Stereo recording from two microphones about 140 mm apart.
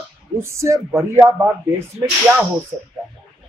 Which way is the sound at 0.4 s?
20° right (ahead or behind).